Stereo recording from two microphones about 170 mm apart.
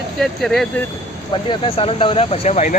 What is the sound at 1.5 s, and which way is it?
Speech, 30° left (ahead or behind).